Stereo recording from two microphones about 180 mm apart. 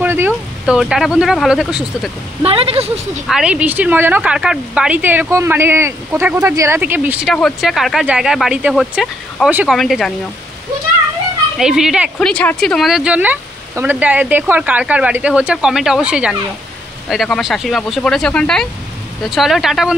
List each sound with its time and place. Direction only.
0.0 s speech: 10° right (ahead or behind)
2.4 s a woman's voice: 30° right (ahead or behind)
3.3 s a woman's voice: 5° right (ahead or behind)
11.5 s speech: 5° right (ahead or behind)